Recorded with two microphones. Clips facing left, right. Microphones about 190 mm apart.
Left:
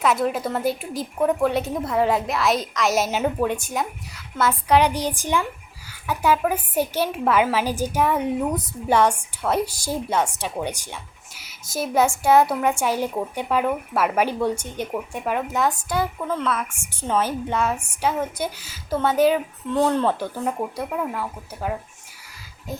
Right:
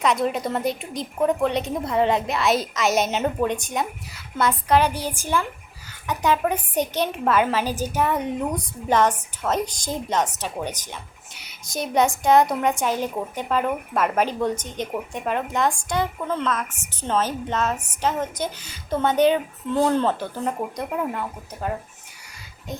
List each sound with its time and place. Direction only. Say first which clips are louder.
0.0 s a woman's voice: left 1 dB; 5° left (ahead or behind)
4.8 s a woman's voice: left 2 dB; 15° left (ahead or behind); by 20.1 s centre (ahead or behind)
20.1 s a woman's voice: left 1 dB; 15° left (ahead or behind)